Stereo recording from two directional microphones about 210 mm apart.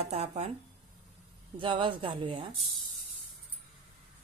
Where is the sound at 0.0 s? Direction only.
30° right (ahead or behind).